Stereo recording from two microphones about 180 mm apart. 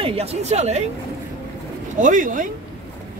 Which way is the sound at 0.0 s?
35° right (ahead or behind).